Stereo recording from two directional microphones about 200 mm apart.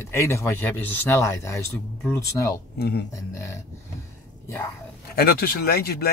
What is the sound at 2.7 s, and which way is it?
Speech, 55° left (ahead or behind).